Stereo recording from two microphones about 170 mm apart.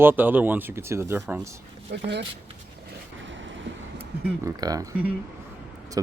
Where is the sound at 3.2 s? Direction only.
90° right.